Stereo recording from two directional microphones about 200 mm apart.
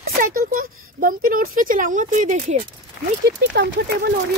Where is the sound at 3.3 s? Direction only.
60° right (ahead or behind).